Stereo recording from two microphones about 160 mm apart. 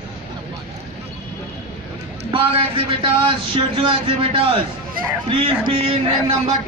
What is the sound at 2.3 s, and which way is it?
A man's voice, 35° right (ahead or behind).